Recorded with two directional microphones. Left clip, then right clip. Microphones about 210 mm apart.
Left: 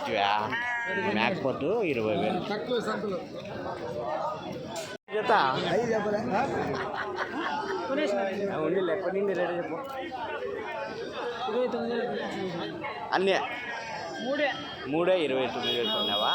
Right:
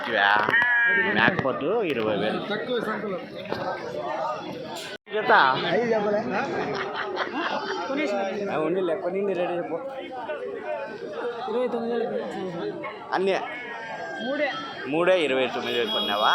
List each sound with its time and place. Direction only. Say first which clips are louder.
0.1 s speech: right 7 dB; 10° left (ahead or behind)
5.1 s speech: right 5 dB; 5° left (ahead or behind)
5.7 s speech: right 4 dB; 35° right (ahead or behind)
8.5 s speech: right 4 dB; 5° right (ahead or behind)
13.1 s speech: right 1 dB; centre (ahead or behind)